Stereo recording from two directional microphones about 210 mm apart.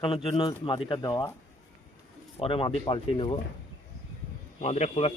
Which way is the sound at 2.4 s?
25° left (ahead or behind).